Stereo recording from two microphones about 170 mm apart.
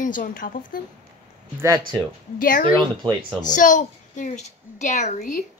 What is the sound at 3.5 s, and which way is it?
A child's voice, 50° left (ahead or behind).